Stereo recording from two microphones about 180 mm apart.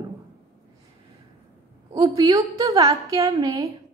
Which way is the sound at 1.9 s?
25° right (ahead or behind).